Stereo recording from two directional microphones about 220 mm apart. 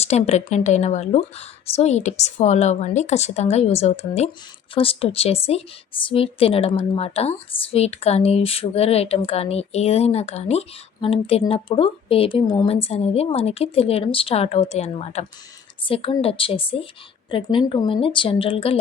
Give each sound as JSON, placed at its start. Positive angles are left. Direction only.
{"t": 0.0, "sound": "a woman's voice", "side_deg": 30}